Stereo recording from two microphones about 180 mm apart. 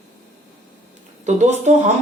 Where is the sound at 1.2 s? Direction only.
40° right (ahead or behind).